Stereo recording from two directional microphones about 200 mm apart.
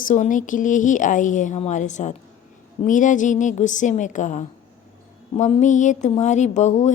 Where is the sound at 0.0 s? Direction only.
40° left (ahead or behind).